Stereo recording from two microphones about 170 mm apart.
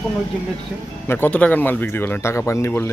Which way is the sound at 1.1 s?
10° left (ahead or behind).